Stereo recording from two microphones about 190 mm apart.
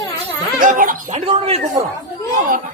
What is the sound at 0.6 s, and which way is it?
Speech, 45° right (ahead or behind).